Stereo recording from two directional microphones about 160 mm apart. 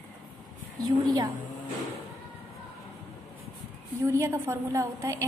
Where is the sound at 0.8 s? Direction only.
25° right (ahead or behind).